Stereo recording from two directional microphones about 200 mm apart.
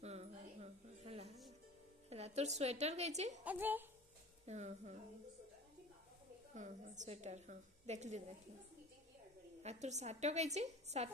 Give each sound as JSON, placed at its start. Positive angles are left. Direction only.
{"t": 0.0, "sound": "a sound", "side_deg": -30}
{"t": 2.0, "sound": "a woman's voice", "side_deg": -30}
{"t": 3.4, "sound": "a woman's voice", "side_deg": -10}
{"t": 4.5, "sound": "a woman's voice", "side_deg": -35}
{"t": 6.5, "sound": "a woman's voice", "side_deg": -35}
{"t": 9.6, "sound": "a woman's voice", "side_deg": -35}